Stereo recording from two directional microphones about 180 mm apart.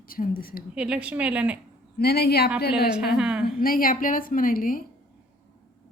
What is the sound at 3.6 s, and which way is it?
Speech, 55° left (ahead or behind).